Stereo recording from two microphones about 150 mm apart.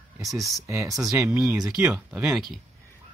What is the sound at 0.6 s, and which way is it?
Speech, 20° right (ahead or behind).